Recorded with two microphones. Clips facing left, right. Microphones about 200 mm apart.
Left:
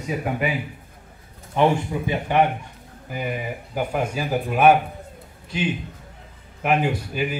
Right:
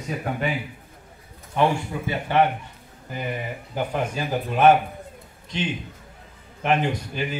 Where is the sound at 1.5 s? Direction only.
15° left (ahead or behind).